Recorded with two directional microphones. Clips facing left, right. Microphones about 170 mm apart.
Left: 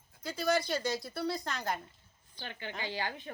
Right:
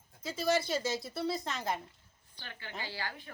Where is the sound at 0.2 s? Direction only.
Centre (ahead or behind).